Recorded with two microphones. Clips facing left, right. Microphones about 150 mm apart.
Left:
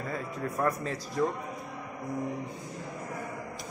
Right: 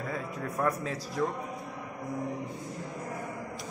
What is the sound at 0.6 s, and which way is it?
Speech, centre (ahead or behind).